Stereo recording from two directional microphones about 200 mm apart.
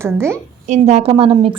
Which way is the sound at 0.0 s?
15° right (ahead or behind).